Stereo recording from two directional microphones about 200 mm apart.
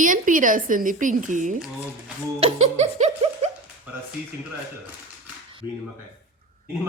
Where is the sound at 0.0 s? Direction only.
40° right (ahead or behind).